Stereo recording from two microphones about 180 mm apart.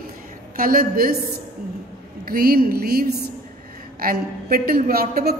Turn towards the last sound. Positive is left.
turn(degrees=-60)  # may be behind; listen again after turning